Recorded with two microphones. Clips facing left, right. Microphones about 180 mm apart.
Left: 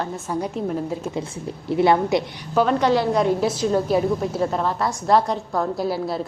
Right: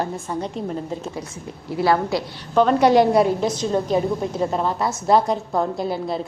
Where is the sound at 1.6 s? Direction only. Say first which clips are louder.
Left 2 dB; 20° left (ahead or behind).